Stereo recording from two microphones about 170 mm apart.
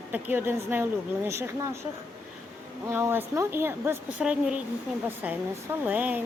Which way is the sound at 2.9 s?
15° right (ahead or behind).